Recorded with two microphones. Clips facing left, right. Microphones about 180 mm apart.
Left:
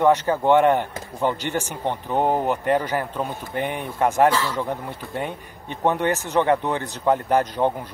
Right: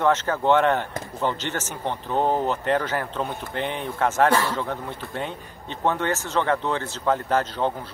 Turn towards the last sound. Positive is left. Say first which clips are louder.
# left 3 dB
turn(degrees=15)  # may be behind; listen again after turning